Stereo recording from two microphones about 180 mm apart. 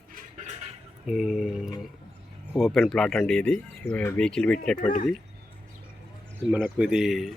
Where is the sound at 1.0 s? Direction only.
Centre (ahead or behind).